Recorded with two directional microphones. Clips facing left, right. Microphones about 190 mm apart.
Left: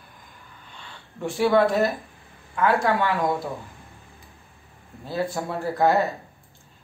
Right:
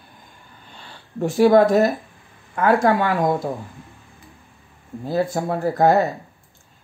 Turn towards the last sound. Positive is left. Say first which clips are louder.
# right 4 dB
turn(degrees=-45)  # may be behind; listen again after turning